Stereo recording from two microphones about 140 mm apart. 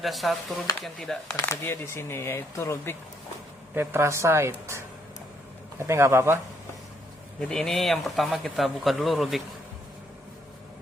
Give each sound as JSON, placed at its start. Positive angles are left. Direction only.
{"t": 0.0, "sound": "speech", "side_deg": 0}
{"t": 1.4, "sound": "speech", "side_deg": 20}
{"t": 3.8, "sound": "speech", "side_deg": -15}
{"t": 5.8, "sound": "speech", "side_deg": -20}
{"t": 7.4, "sound": "speech", "side_deg": 5}